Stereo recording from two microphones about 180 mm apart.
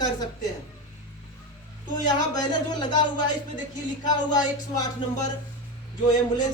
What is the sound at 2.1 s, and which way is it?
A man's voice, 25° left (ahead or behind).